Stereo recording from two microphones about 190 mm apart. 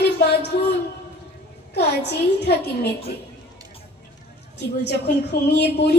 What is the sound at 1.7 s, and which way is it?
A woman's voice, 60° left (ahead or behind).